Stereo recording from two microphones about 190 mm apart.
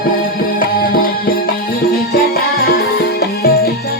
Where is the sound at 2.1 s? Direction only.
55° left (ahead or behind).